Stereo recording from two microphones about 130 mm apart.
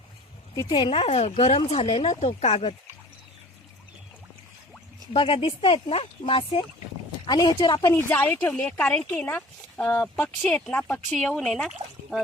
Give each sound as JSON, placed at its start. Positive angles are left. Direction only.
{"t": 0.5, "sound": "speech", "side_deg": 30}
{"t": 5.1, "sound": "speech", "side_deg": 45}
{"t": 7.9, "sound": "speech", "side_deg": 20}